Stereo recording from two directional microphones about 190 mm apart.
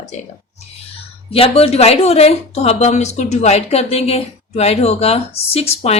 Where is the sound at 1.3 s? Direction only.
30° left (ahead or behind).